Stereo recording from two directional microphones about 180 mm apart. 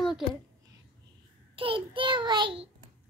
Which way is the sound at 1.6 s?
30° right (ahead or behind).